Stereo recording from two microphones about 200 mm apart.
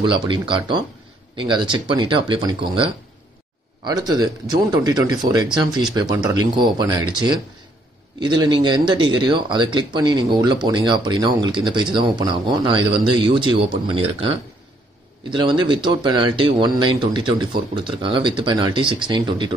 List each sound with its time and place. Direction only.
0.0 s speech: 25° right (ahead or behind)
15.3 s speech: 25° right (ahead or behind)